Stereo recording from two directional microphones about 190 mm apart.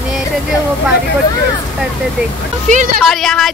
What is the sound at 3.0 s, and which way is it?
Speech, centre (ahead or behind).